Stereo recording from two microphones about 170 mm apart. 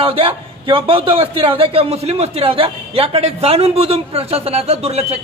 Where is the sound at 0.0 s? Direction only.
30° right (ahead or behind).